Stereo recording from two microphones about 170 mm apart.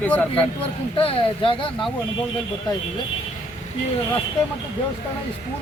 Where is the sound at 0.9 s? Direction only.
30° left (ahead or behind).